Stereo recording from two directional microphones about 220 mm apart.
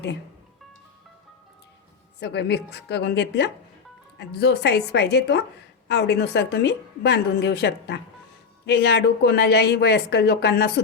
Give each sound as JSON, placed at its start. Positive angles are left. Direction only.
{"t": 2.2, "sound": "a woman's voice", "side_deg": 50}